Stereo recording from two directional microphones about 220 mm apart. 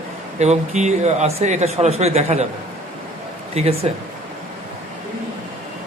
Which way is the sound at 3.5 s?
25° right (ahead or behind).